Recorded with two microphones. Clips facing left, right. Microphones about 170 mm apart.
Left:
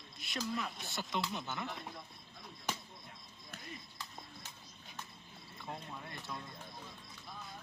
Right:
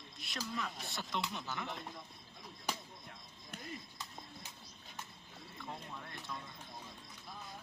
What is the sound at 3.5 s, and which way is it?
Music, 15° right (ahead or behind).